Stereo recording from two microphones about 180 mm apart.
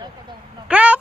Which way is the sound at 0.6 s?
5° right (ahead or behind).